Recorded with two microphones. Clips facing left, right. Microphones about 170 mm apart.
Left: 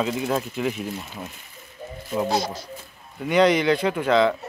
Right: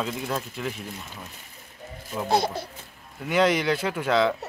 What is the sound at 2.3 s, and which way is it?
Speech, 55° right (ahead or behind).